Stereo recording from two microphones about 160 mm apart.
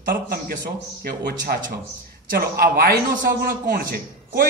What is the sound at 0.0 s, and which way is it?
Speech, 60° right (ahead or behind).